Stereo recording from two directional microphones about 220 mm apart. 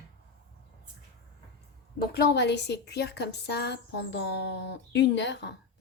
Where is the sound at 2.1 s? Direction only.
50° left (ahead or behind).